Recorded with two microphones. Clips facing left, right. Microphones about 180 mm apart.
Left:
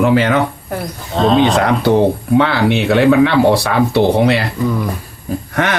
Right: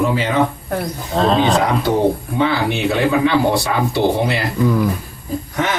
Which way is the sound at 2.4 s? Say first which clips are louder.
Left 4 dB; 75° left (ahead or behind).